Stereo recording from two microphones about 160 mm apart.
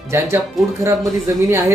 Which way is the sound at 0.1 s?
15° right (ahead or behind).